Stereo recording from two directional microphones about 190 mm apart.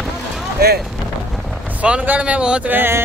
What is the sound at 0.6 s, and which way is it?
Vehicle, 55° right (ahead or behind).